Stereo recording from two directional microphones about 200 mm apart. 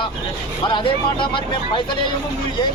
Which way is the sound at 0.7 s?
25° left (ahead or behind).